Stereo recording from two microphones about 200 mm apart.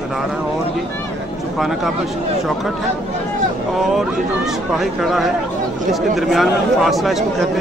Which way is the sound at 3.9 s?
Centre (ahead or behind).